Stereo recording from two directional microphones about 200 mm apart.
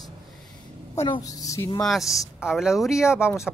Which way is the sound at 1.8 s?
Centre (ahead or behind).